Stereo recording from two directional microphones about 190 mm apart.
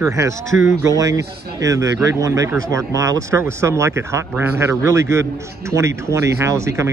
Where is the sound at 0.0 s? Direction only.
15° right (ahead or behind).